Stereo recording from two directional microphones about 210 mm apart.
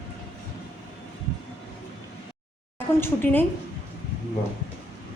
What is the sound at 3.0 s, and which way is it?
Speech, 10° left (ahead or behind).